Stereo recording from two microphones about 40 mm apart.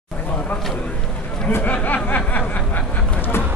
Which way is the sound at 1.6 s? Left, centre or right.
Left.